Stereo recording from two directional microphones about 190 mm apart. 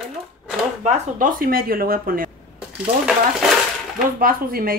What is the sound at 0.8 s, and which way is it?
A woman's voice, 45° right (ahead or behind).